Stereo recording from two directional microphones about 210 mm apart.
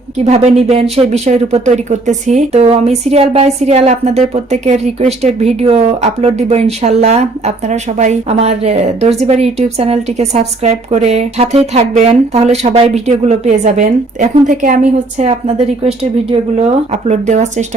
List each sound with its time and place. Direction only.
0.3 s speech: 30° right (ahead or behind)
17.1 s speech: 35° right (ahead or behind)